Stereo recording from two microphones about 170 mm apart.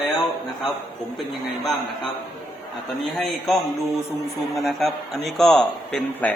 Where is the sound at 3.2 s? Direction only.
Centre (ahead or behind).